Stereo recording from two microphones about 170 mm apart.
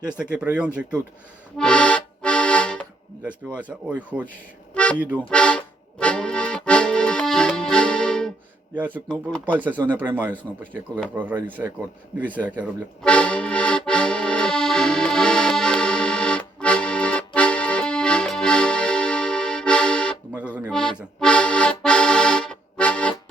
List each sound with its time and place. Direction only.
0.2 s speech: 5° right (ahead or behind)
1.5 s accordion: 5° left (ahead or behind)
3.2 s speech: 10° right (ahead or behind)
4.7 s music: 5° left (ahead or behind)
5.3 s accordion: 5° left (ahead or behind)
9.6 s speech: 10° right (ahead or behind)
13.0 s accordion: 5° left (ahead or behind)
20.3 s a sound: 10° right (ahead or behind)
20.7 s accordion: 5° left (ahead or behind)